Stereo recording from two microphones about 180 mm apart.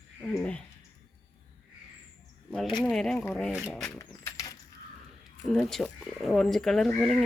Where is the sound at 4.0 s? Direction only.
15° left (ahead or behind).